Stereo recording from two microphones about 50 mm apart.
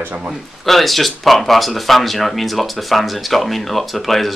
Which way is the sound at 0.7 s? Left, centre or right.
Centre.